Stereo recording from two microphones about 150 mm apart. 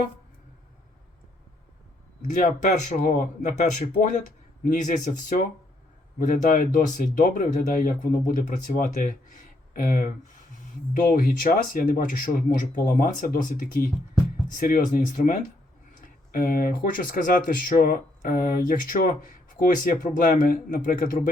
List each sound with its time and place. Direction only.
2.3 s speech: 55° left (ahead or behind)
11.1 s speech: 65° left (ahead or behind)